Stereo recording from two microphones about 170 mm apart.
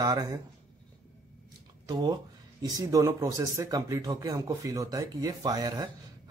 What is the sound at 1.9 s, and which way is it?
Speech, 25° right (ahead or behind).